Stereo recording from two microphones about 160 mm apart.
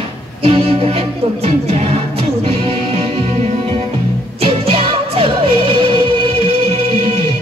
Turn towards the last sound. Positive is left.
turn(degrees=-35)  # may be behind; listen again after turning